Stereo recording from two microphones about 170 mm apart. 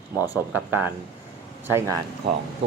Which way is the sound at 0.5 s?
10° right (ahead or behind).